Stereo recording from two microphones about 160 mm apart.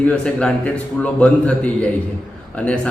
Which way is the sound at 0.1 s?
5° left (ahead or behind).